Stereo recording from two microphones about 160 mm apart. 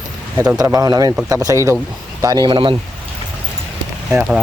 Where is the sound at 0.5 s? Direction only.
20° right (ahead or behind).